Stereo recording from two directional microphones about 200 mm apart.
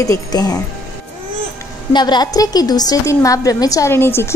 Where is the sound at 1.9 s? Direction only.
20° left (ahead or behind).